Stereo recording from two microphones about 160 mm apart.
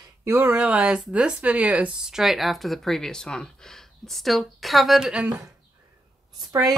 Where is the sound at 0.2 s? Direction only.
15° right (ahead or behind).